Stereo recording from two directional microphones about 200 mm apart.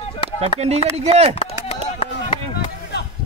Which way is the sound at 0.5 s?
30° right (ahead or behind).